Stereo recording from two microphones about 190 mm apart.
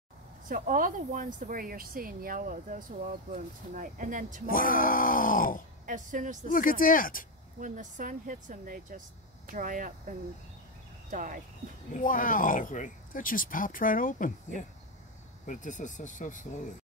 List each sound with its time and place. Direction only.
0.5 s speech: 45° right (ahead or behind)
4.5 s speech: 45° left (ahead or behind)
5.9 s speech: 40° right (ahead or behind)
6.5 s speech: 45° left (ahead or behind)
7.6 s speech: 45° right (ahead or behind)
11.9 s speech: 45° left (ahead or behind)